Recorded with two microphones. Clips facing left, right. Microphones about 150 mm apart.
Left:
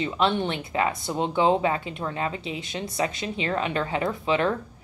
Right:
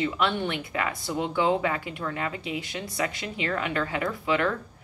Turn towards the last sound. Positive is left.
turn(degrees=25)  # may be behind; listen again after turning